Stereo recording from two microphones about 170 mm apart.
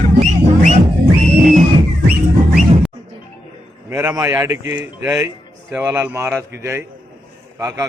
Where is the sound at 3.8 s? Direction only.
15° right (ahead or behind).